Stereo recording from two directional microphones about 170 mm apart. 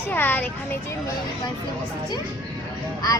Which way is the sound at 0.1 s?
10° left (ahead or behind).